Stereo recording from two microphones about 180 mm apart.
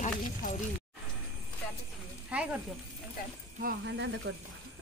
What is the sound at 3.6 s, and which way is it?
Speech, 80° right.